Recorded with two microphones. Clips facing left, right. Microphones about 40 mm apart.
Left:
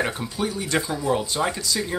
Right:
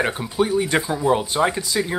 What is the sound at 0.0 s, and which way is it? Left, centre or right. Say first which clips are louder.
Speech: right 4 dB; centre.